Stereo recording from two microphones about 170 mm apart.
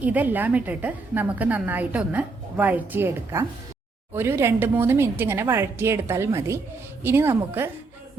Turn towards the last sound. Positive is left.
turn(degrees=-15)  # may be behind; listen again after turning